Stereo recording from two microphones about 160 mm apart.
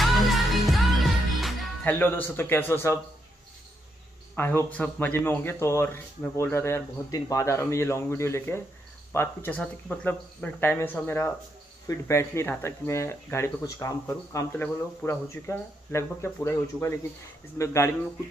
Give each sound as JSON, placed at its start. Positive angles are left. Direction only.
{"t": 0.0, "sound": "music", "side_deg": 0}
{"t": 2.0, "sound": "speech", "side_deg": 10}
{"t": 4.4, "sound": "speech", "side_deg": 10}